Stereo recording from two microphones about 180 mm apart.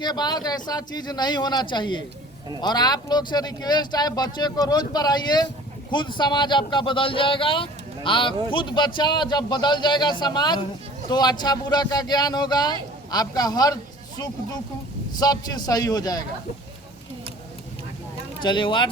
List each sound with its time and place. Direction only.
0.0 s speech: 25° left (ahead or behind)
15.2 s speech: 20° left (ahead or behind)
18.4 s speech: 25° left (ahead or behind)